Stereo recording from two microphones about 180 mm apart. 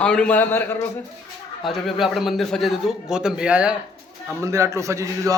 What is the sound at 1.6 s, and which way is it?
A man's voice, centre (ahead or behind).